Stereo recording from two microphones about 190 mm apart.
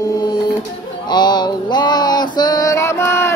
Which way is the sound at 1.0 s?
20° left (ahead or behind).